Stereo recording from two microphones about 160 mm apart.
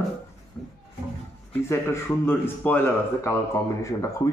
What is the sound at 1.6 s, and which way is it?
A man's voice, 15° left (ahead or behind).